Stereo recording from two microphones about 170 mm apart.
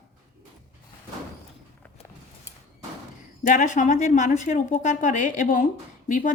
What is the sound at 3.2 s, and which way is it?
A woman's voice, 50° left (ahead or behind).